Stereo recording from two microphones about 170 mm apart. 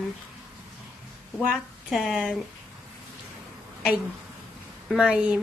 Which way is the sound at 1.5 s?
Centre (ahead or behind).